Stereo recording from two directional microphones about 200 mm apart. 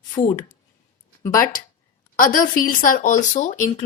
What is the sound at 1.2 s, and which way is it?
Speech, 10° left (ahead or behind).